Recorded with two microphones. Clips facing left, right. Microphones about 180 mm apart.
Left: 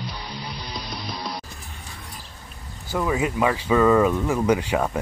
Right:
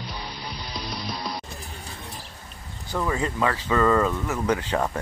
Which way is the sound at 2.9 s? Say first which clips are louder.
Left 3 dB; 5° left (ahead or behind).